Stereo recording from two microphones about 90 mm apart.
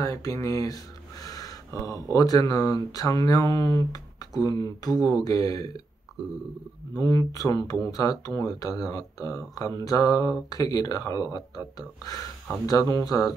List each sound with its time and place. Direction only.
0.0 s speech: 40° left (ahead or behind)
7.0 s speech: 40° left (ahead or behind)